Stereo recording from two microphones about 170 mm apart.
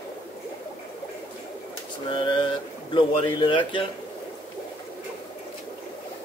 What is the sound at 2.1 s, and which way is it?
Speech, 30° left (ahead or behind).